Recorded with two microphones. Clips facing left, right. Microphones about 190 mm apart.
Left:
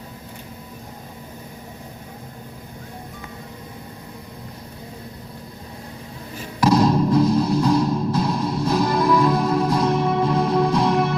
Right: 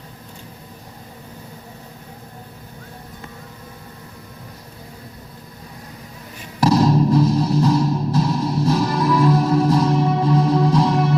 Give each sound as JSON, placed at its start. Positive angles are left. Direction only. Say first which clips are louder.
{"t": 6.6, "sound": "music", "louder": "right 1 dB", "side_deg": -35}